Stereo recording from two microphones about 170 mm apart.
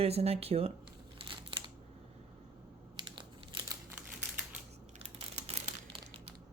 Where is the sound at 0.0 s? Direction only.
35° right (ahead or behind).